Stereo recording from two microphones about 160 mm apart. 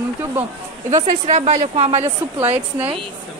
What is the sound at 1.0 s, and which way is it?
A woman's voice, 45° right (ahead or behind).